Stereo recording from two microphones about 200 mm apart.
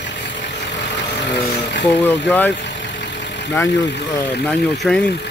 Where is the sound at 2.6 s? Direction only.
60° left (ahead or behind).